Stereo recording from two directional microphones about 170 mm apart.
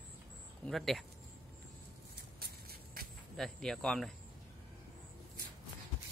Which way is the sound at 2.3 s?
65° right (ahead or behind).